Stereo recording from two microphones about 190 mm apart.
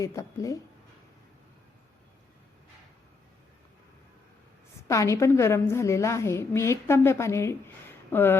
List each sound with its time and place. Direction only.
0.0 s a woman's voice: 15° left (ahead or behind)
4.8 s a woman's voice: 15° left (ahead or behind)